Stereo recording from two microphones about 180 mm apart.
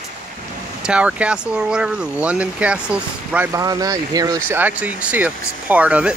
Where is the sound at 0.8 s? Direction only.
5° right (ahead or behind).